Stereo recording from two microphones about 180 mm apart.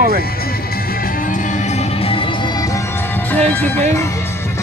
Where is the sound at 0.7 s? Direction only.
55° left (ahead or behind); by 4.1 s 15° left (ahead or behind).